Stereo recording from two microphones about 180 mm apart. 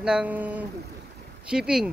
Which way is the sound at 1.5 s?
5° right (ahead or behind).